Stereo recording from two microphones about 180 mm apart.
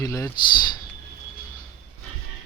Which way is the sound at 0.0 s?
15° left (ahead or behind).